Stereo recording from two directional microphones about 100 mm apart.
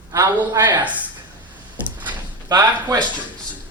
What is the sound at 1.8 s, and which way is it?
Drawer open or close, 15° right (ahead or behind).